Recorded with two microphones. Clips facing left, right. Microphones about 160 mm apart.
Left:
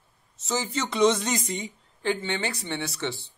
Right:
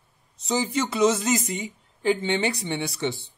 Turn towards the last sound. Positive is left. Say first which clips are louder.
# right 3 dB
turn(degrees=-15)  # may be behind; listen again after turning